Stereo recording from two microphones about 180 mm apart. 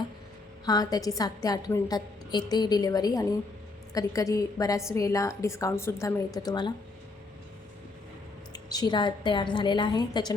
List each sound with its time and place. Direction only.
0.6 s a woman's voice: 20° left (ahead or behind)
8.5 s a woman's voice: 20° left (ahead or behind)